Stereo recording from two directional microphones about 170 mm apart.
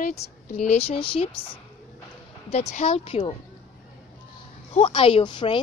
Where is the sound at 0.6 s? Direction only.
40° left (ahead or behind).